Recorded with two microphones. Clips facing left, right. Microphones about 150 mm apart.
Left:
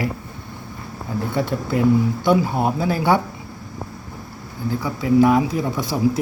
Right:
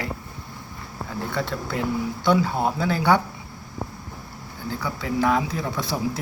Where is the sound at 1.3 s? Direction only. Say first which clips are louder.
Left 6 dB; 15° left (ahead or behind).